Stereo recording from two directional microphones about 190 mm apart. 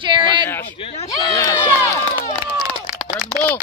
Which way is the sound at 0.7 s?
30° left (ahead or behind).